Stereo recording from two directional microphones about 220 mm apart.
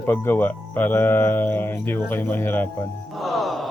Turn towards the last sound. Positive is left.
turn(degrees=0)  # may be behind; listen again after turning